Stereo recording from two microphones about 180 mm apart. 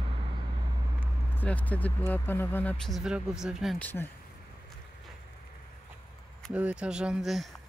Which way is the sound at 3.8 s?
10° left (ahead or behind).